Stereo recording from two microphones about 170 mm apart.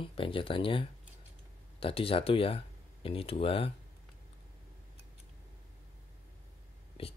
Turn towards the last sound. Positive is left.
turn(degrees=35)  # may be behind; listen again after turning